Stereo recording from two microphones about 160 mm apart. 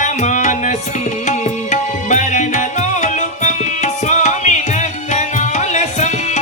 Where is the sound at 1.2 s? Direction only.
50° left (ahead or behind).